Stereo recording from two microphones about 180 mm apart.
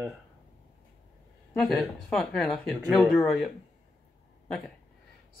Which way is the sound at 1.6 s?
Centre (ahead or behind).